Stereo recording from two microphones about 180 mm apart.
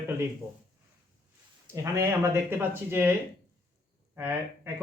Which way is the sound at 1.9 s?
15° right (ahead or behind).